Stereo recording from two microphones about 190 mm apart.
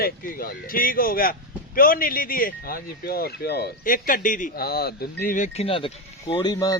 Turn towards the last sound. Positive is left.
turn(degrees=20)  # may be behind; listen again after turning